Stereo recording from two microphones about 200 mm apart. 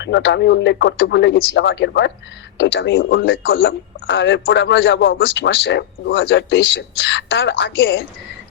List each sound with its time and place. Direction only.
0.0 s speech: 60° left (ahead or behind)